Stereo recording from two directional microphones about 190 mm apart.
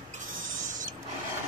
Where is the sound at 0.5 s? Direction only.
45° right (ahead or behind).